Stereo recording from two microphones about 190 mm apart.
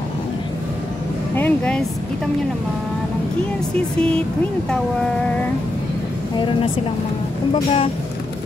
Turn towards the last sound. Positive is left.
turn(degrees=30)  # may be behind; listen again after turning